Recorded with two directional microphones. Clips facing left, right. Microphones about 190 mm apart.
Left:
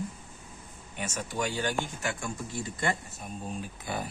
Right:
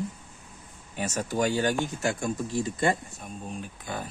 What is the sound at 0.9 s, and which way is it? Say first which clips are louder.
Speech: right 5 dB; 40° right (ahead or behind).